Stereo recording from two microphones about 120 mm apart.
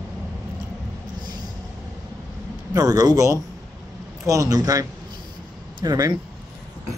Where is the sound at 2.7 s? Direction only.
30° right (ahead or behind).